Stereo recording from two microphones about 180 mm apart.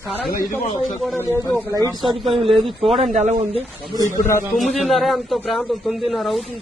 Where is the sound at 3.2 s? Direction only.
40° right (ahead or behind).